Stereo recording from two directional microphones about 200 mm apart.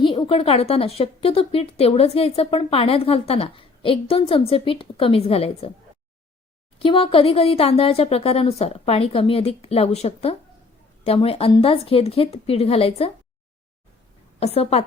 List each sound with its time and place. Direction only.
0.0 s a woman's voice: 25° left (ahead or behind)
6.7 s a woman's voice: 25° left (ahead or behind)
14.3 s a woman's voice: 30° left (ahead or behind)